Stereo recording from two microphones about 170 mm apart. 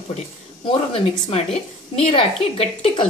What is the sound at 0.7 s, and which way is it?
A woman's voice, 35° left (ahead or behind).